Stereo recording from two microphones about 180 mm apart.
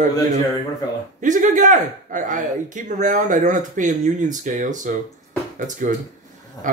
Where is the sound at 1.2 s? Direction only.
45° right (ahead or behind).